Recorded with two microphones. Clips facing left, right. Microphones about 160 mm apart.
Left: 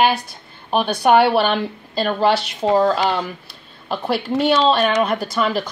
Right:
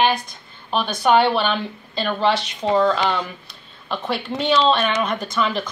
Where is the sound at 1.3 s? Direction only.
45° left (ahead or behind).